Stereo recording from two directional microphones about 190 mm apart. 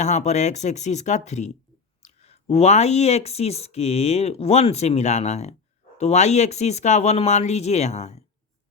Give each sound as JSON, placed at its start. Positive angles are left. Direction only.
{"t": 0.0, "sound": "speech", "side_deg": 35}